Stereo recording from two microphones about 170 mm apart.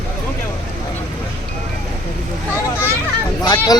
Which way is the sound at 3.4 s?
25° left (ahead or behind).